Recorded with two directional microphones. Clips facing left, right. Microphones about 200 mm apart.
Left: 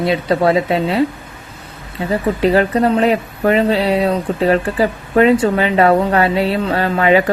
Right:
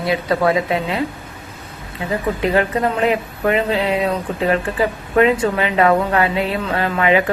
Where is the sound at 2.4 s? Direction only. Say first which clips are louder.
Left 5 dB; 35° left (ahead or behind).